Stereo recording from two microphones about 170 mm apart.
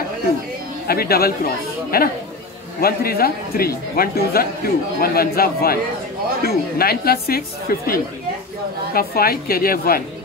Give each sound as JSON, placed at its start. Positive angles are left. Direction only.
{"t": 0.8, "sound": "speech", "side_deg": 65}